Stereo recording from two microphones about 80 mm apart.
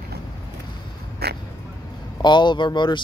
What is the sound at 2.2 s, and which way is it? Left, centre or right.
Speech, left.